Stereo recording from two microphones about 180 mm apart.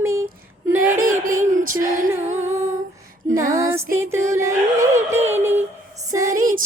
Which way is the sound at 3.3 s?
15° right (ahead or behind).